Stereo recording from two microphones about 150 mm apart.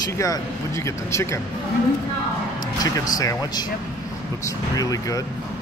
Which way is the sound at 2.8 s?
25° left (ahead or behind).